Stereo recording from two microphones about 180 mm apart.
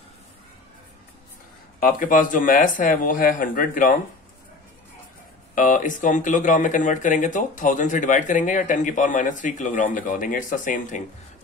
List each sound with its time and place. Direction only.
1.8 s speech: 50° left (ahead or behind)
5.5 s speech: 45° left (ahead or behind)